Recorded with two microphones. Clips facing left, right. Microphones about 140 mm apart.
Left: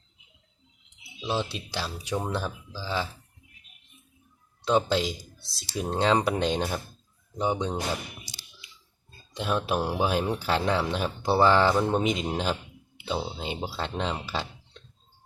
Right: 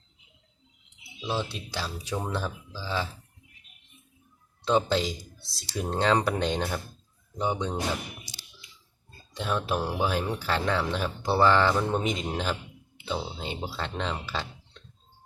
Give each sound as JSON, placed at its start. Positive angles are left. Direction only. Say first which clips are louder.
{"t": 1.5, "sound": "speech", "louder": "left 1 dB", "side_deg": 15}
{"t": 4.6, "sound": "speech", "louder": "left 1 dB", "side_deg": 10}
{"t": 9.3, "sound": "speech", "louder": "left 1 dB", "side_deg": 15}